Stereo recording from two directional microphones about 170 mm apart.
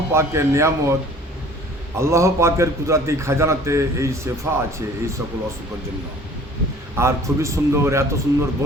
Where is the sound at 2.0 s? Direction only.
15° right (ahead or behind).